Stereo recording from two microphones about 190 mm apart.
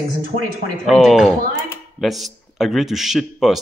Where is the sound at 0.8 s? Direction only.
Centre (ahead or behind).